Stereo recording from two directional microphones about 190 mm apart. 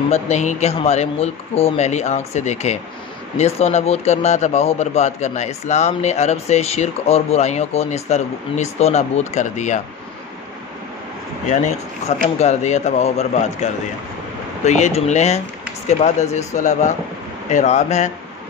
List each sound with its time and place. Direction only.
0.1 s speech: 40° left (ahead or behind)
11.4 s speech: 40° left (ahead or behind)